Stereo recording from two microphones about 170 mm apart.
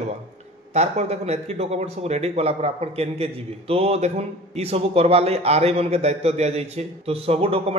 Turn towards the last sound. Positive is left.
turn(degrees=-35)  # may be behind; listen again after turning